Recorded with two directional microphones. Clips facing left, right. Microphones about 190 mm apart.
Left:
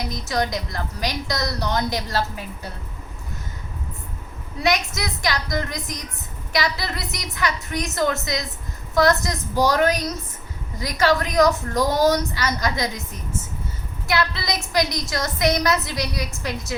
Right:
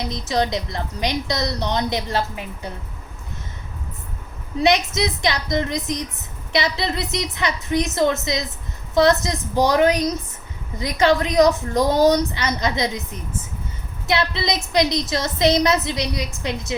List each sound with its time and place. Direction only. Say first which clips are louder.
0.0 s a woman's voice: right 2 dB; 25° right (ahead or behind)
4.5 s a woman's voice: right 4 dB; 25° right (ahead or behind)
14.1 s a woman's voice: right 2 dB; 20° right (ahead or behind)